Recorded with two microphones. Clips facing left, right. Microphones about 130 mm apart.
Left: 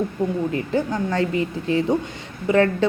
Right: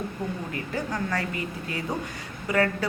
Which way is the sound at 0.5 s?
25° left (ahead or behind).